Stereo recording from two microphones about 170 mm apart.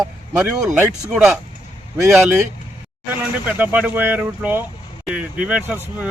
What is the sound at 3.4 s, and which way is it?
Speech, 10° right (ahead or behind).